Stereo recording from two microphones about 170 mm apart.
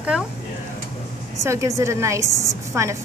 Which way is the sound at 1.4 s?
15° right (ahead or behind).